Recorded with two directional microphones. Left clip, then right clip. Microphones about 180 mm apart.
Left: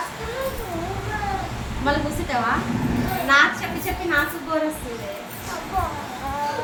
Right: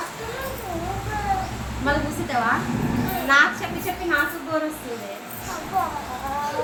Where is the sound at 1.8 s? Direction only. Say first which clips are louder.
Left 1 dB; 5° left (ahead or behind).